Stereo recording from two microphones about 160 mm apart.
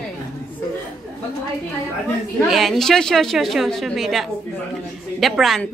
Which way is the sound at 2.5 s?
Centre (ahead or behind).